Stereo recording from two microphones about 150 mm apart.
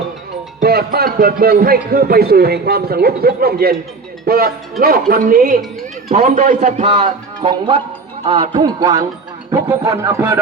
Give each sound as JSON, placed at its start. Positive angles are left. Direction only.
{"t": 0.6, "sound": "a man's voice", "side_deg": -90}
{"t": 5.3, "sound": "a man's voice", "side_deg": -65}
{"t": 6.9, "sound": "music", "side_deg": -35}
{"t": 8.2, "sound": "speech", "side_deg": -35}